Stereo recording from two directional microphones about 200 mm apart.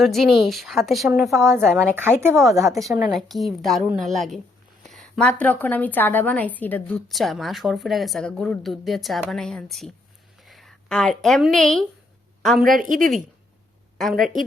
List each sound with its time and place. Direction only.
0.0 s a woman's voice: centre (ahead or behind)
1.5 s speech: 10° right (ahead or behind)
2.7 s a woman's voice: centre (ahead or behind)
12.8 s a woman's voice: 40° right (ahead or behind)
14.0 s a woman's voice: centre (ahead or behind)